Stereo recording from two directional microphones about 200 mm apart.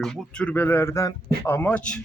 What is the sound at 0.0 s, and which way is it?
Speech, 5° left (ahead or behind).